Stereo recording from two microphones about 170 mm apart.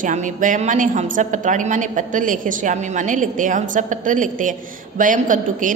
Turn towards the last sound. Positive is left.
turn(degrees=-50)  # may be behind; listen again after turning